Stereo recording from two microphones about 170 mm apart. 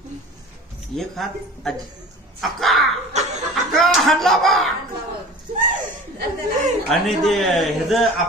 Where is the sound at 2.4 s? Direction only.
Centre (ahead or behind).